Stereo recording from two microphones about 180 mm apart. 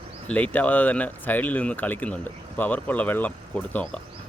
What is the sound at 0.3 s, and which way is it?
Speech, 10° left (ahead or behind).